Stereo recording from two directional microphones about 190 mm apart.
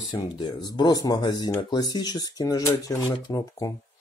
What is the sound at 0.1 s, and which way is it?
Speech, 25° left (ahead or behind).